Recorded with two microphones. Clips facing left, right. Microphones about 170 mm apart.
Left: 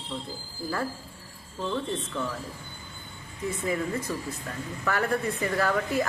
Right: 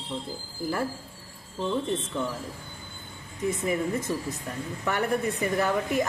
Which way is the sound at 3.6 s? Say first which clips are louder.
Even; 20° right (ahead or behind).